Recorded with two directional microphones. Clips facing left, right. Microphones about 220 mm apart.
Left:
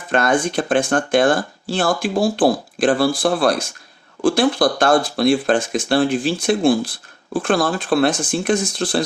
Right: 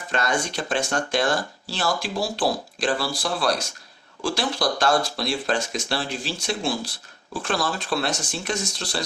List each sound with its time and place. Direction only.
0.1 s speech: 55° left (ahead or behind)